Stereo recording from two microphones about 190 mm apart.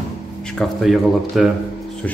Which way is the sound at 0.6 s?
Centre (ahead or behind).